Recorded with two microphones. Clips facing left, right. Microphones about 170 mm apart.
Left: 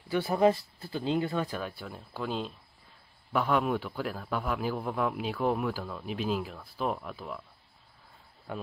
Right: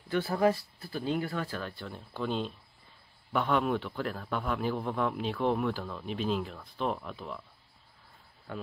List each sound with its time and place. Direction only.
0.1 s a man's voice: 15° left (ahead or behind)